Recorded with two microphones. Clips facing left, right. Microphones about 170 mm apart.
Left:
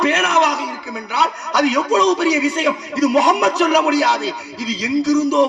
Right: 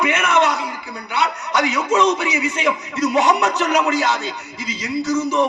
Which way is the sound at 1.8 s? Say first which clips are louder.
Even; 35° left (ahead or behind).